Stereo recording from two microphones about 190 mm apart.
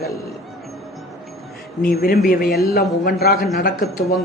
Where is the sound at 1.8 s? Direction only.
50° left (ahead or behind).